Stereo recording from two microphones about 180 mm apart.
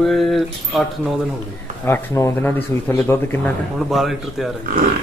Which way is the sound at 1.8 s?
15° left (ahead or behind).